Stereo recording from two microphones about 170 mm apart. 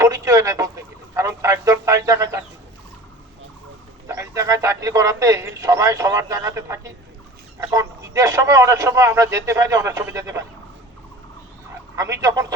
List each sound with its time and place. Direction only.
0.0 s speech: 20° right (ahead or behind)
4.0 s a man's voice: 20° right (ahead or behind)
11.9 s speech: 20° right (ahead or behind)